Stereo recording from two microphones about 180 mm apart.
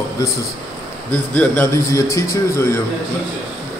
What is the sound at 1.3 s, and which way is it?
Speech, 10° left (ahead or behind).